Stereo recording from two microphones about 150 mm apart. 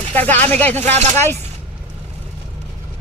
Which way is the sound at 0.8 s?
45° right (ahead or behind).